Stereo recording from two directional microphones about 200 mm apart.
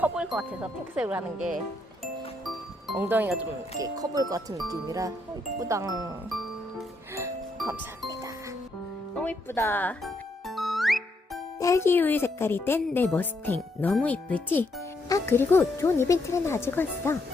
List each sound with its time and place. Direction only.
0.0 s speech: 5° right (ahead or behind)
2.8 s speech: 5° right (ahead or behind)
7.2 s music: 15° right (ahead or behind)
9.1 s music: 10° left (ahead or behind)
11.6 s speech: 15° left (ahead or behind)